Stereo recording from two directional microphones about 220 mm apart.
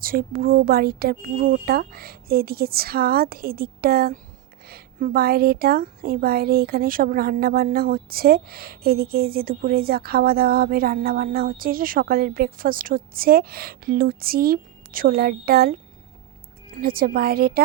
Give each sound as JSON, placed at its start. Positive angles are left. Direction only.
{"t": 0.0, "sound": "a woman's voice", "side_deg": -40}
{"t": 16.8, "sound": "a woman's voice", "side_deg": -40}